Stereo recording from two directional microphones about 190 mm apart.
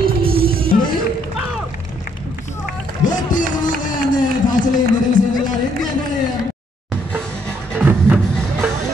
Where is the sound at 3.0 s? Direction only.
45° left (ahead or behind).